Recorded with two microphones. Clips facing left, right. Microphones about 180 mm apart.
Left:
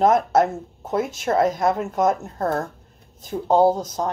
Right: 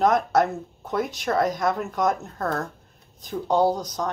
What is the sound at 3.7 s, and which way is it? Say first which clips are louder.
Speech: left 3 dB; 25° left (ahead or behind).